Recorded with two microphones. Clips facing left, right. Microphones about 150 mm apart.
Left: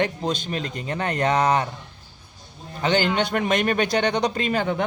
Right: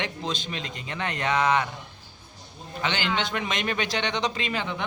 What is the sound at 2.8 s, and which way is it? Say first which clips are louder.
Speech: left 7 dB; 40° left (ahead or behind).